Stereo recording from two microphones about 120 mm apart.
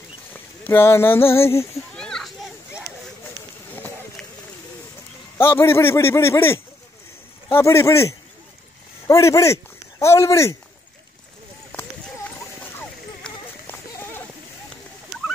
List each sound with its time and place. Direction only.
0.3 s speech: 20° left (ahead or behind)
2.0 s children playing: 5° left (ahead or behind)
3.7 s run: 15° left (ahead or behind)
5.4 s a man's voice: 20° left (ahead or behind)
13.2 s run: 10° left (ahead or behind)